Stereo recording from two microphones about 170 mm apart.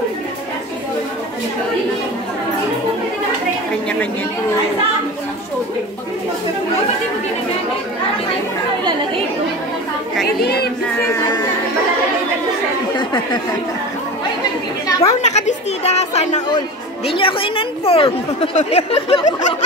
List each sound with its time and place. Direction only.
10.2 s speech: 70° left (ahead or behind)
11.0 s speech: 15° left (ahead or behind)
12.9 s speech: 25° left (ahead or behind)
15.0 s a woman's voice: 40° left (ahead or behind)